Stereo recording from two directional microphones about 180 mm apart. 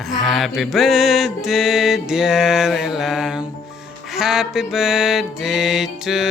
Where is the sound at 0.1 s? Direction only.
Centre (ahead or behind).